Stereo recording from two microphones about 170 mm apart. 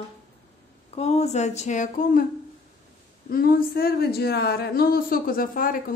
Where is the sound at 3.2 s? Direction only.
60° left (ahead or behind).